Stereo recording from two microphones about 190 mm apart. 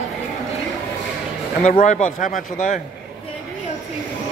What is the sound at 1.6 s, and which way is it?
A man's voice, 40° left (ahead or behind).